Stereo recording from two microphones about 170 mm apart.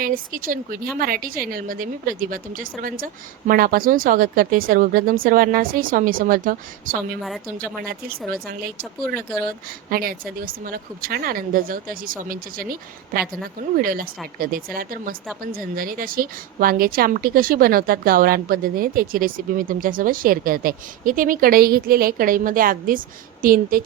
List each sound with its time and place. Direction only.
0.0 s a woman's voice: 55° right (ahead or behind)
9.6 s a woman's voice: 60° right (ahead or behind)